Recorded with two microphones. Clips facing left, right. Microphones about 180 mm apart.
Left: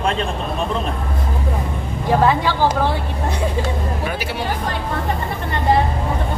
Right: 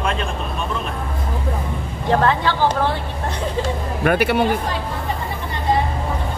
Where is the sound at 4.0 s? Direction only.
60° right (ahead or behind).